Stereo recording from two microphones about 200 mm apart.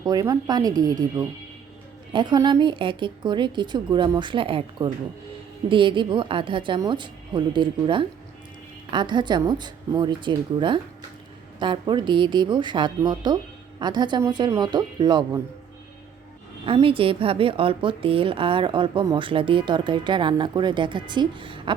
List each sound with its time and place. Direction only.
0.0 s a woman's voice: 15° right (ahead or behind)
16.6 s a woman's voice: 25° right (ahead or behind)